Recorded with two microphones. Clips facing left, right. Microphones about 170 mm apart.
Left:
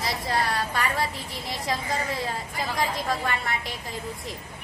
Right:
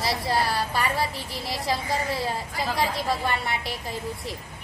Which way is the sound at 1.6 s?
30° right (ahead or behind).